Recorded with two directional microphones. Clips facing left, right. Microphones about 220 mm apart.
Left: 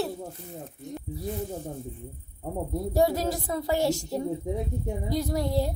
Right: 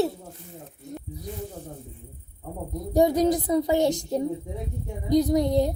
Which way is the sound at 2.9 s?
20° right (ahead or behind).